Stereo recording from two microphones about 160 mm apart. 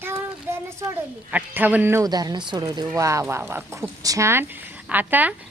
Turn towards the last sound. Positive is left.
turn(degrees=-10)  # may be behind; listen again after turning